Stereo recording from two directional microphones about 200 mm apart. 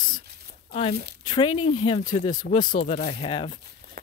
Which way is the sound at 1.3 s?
20° left (ahead or behind).